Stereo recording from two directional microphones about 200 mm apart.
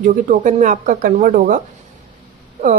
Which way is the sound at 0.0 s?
40° right (ahead or behind).